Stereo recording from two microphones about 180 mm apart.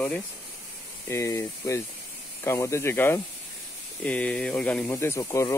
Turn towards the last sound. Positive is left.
turn(degrees=15)  # may be behind; listen again after turning